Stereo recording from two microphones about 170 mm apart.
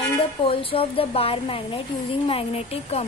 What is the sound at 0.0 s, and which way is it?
A woman's voice, 30° left (ahead or behind).